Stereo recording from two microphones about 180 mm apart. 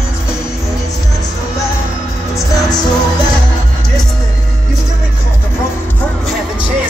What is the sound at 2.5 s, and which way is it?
Music, 20° left (ahead or behind).